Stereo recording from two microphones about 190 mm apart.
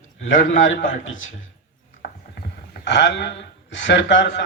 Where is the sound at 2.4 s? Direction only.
70° left (ahead or behind).